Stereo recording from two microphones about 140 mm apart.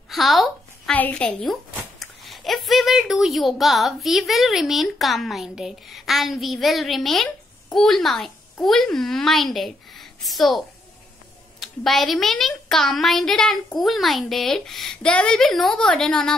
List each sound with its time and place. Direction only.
0.1 s a sound: centre (ahead or behind)
0.9 s a woman's voice: 10° left (ahead or behind)
11.6 s a woman's voice: centre (ahead or behind)